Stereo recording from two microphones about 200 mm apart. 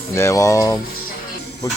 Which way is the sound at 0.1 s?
15° left (ahead or behind).